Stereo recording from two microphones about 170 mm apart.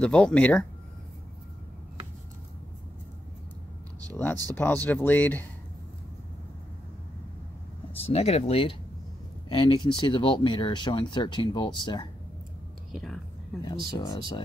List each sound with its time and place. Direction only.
0.0 s speech: 5° left (ahead or behind)
4.1 s speech: 10° left (ahead or behind)
7.9 s speech: 35° left (ahead or behind)
12.9 s speech: centre (ahead or behind)
13.9 s speech: 20° left (ahead or behind)